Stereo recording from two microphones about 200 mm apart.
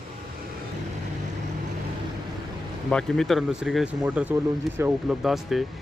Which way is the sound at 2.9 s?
5° left (ahead or behind).